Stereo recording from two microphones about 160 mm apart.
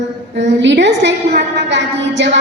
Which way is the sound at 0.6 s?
90° right.